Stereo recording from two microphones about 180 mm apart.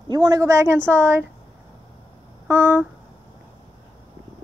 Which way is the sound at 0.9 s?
15° right (ahead or behind).